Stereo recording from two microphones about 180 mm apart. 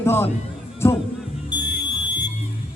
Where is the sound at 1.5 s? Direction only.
25° left (ahead or behind).